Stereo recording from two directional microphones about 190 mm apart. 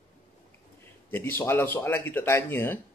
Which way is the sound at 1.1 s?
15° left (ahead or behind).